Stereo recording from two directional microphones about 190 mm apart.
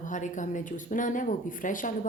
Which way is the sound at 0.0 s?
40° left (ahead or behind).